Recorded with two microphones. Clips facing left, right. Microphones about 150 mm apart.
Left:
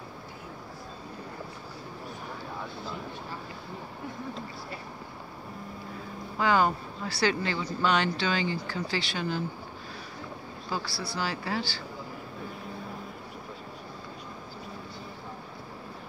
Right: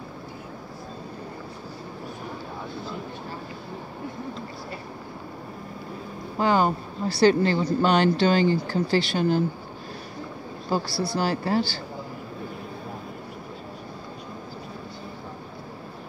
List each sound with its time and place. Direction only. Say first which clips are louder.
6.3 s speech: right 3 dB; 30° right (ahead or behind)
7.2 s speech: right 9 dB; 40° right (ahead or behind)
10.7 s speech: right 8 dB; 45° right (ahead or behind)